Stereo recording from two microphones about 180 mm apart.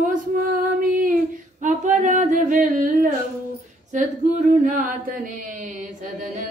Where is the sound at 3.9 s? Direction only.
45° right (ahead or behind).